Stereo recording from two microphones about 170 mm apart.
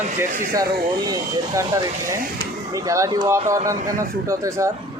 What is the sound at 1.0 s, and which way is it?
Speech, 20° right (ahead or behind).